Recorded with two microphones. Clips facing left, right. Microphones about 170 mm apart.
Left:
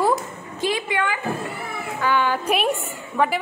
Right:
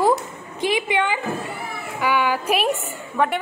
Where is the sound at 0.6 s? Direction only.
20° right (ahead or behind).